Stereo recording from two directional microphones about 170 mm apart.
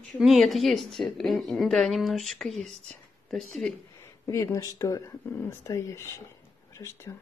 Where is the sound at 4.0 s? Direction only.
15° left (ahead or behind).